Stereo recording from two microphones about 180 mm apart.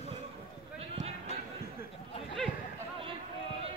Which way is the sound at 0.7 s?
35° right (ahead or behind).